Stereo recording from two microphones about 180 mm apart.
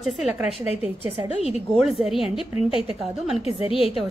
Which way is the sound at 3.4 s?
30° left (ahead or behind).